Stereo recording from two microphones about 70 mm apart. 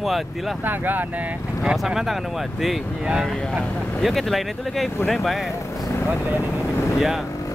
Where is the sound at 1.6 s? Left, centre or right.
Centre.